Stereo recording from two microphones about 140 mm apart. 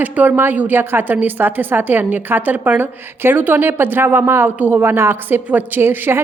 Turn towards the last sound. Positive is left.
turn(degrees=-15)  # may be behind; listen again after turning